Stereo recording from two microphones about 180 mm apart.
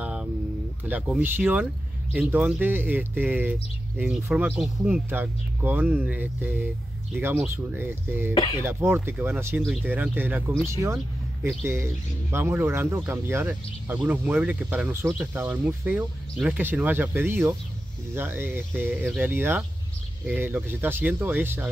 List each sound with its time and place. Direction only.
0.0 s a sound: 5° right (ahead or behind)
0.8 s speech: 5° right (ahead or behind)
8.4 s speech: 25° left (ahead or behind)
8.6 s speech: 10° right (ahead or behind)